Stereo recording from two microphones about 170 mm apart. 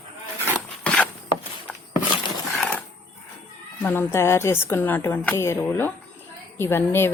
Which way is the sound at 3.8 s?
15° left (ahead or behind).